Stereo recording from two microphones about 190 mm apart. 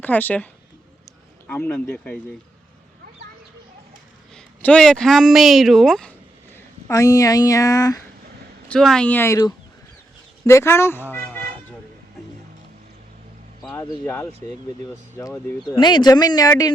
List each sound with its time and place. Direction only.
0.0 s speech: 10° left (ahead or behind)
1.5 s speech: 10° left (ahead or behind)
4.4 s speech: 5° left (ahead or behind)
8.7 s speech: 5° left (ahead or behind)
14.0 s speech: 10° left (ahead or behind)
15.7 s speech: 20° left (ahead or behind)